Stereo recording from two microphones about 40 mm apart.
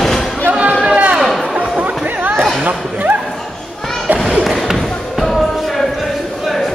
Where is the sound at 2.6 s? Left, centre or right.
Right.